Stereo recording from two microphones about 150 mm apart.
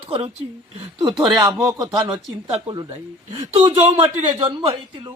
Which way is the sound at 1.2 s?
25° right (ahead or behind).